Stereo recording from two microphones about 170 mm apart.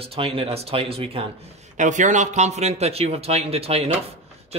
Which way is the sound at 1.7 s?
45° right (ahead or behind).